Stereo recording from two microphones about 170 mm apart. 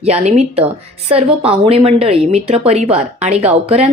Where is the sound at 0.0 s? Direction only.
40° right (ahead or behind).